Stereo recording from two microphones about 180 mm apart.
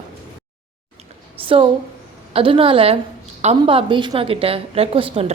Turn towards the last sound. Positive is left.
turn(degrees=-30)  # may be behind; listen again after turning